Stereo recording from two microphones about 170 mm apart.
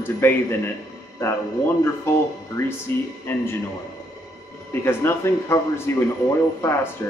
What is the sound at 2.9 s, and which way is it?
Speech, 15° left (ahead or behind).